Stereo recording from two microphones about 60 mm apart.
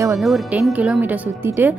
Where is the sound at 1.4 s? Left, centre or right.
Right.